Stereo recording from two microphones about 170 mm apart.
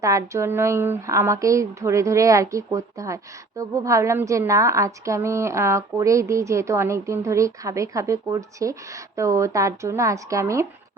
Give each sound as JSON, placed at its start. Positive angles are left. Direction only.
{"t": 0.0, "sound": "a woman's voice", "side_deg": -20}